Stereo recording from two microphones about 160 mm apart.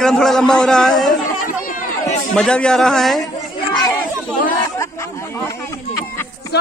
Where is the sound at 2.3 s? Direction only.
5° left (ahead or behind).